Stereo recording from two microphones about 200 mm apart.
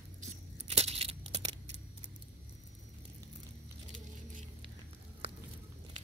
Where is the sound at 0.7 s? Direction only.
30° right (ahead or behind).